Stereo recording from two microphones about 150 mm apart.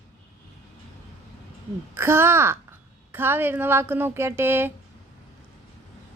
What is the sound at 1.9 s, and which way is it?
A woman's voice, 15° right (ahead or behind).